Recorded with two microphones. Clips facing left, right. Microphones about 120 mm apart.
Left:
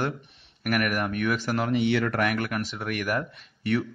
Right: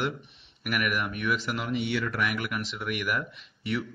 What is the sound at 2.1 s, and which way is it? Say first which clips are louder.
Speech: left 4 dB; 50° left (ahead or behind).